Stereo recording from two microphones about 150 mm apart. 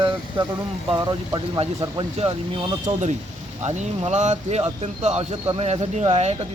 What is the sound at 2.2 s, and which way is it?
Speech, 40° right (ahead or behind).